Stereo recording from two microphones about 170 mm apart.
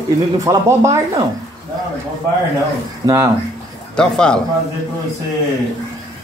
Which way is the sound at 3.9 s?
5° left (ahead or behind).